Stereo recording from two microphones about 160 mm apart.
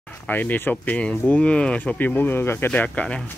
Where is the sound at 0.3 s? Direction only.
10° left (ahead or behind).